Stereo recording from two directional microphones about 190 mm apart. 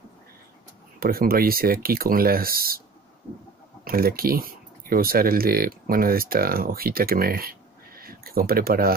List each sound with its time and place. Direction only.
0.9 s speech: 50° right (ahead or behind)
3.8 s speech: 50° right (ahead or behind)